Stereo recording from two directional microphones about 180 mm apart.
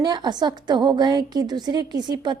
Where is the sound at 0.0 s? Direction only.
25° right (ahead or behind).